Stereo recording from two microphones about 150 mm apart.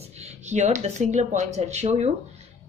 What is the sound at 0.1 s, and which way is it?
Speech, 45° right (ahead or behind).